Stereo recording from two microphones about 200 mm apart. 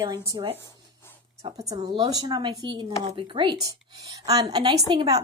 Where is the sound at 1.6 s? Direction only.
20° right (ahead or behind).